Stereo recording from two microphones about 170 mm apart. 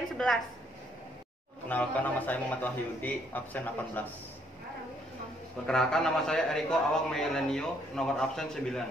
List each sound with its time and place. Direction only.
1.7 s a man's voice: 10° left (ahead or behind)
5.7 s a man's voice: 5° left (ahead or behind)